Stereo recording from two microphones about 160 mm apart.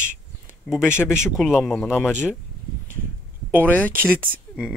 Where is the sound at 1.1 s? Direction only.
5° right (ahead or behind).